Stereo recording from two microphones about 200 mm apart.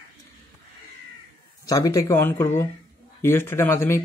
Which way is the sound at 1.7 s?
15° left (ahead or behind).